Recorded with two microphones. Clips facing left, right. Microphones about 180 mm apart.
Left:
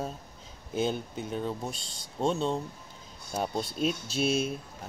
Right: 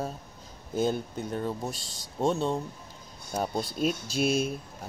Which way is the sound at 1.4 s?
5° right (ahead or behind).